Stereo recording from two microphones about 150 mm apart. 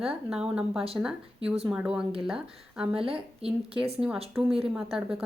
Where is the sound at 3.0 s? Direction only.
40° right (ahead or behind).